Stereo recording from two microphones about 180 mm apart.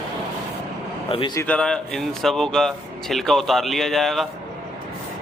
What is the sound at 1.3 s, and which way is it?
Speech, 10° left (ahead or behind).